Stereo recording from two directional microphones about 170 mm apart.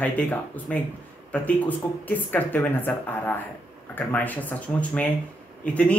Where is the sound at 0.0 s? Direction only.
10° left (ahead or behind).